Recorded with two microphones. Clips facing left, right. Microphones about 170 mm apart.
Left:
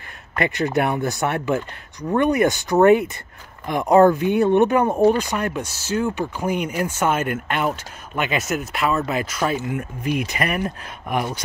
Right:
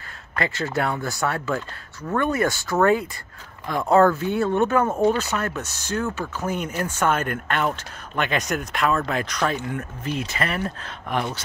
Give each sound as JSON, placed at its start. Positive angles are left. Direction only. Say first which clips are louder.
{"t": 0.4, "sound": "speech", "louder": "left 4 dB", "side_deg": 20}